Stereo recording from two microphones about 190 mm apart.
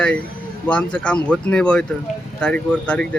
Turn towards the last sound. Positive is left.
turn(degrees=5)  # may be behind; listen again after turning